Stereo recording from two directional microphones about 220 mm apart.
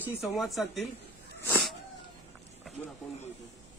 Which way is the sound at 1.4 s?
10° left (ahead or behind).